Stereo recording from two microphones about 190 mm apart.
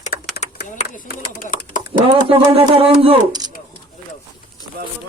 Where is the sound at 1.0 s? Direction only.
50° left (ahead or behind).